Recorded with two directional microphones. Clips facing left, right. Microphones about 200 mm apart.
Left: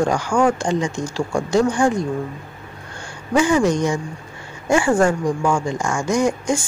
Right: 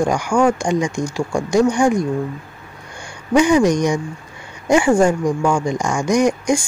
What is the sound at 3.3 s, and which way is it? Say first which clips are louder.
Speech: right 3 dB; 15° right (ahead or behind).